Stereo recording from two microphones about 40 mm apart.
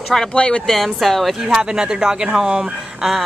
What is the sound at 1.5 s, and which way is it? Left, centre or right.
Speech, centre.